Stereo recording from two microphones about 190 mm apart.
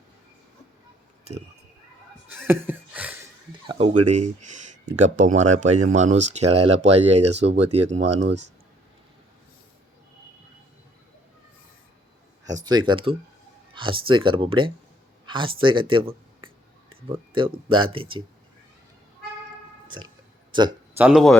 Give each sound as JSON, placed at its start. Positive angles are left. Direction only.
{"t": 2.3, "sound": "a sound", "side_deg": -10}
{"t": 3.7, "sound": "speech", "side_deg": -35}
{"t": 12.6, "sound": "speech", "side_deg": -25}
{"t": 20.5, "sound": "speech", "side_deg": -25}
{"t": 21.0, "sound": "speech", "side_deg": -5}